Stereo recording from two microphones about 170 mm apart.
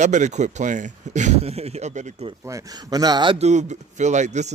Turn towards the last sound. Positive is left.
turn(degrees=-45)  # may be behind; listen again after turning